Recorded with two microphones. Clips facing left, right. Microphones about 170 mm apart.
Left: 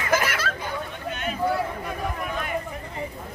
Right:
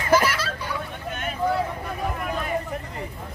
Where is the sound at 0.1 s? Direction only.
50° left (ahead or behind).